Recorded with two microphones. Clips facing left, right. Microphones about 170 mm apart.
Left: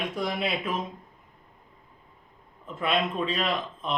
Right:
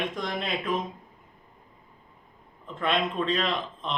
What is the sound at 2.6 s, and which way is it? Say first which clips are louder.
A man's voice: even; 5° left (ahead or behind).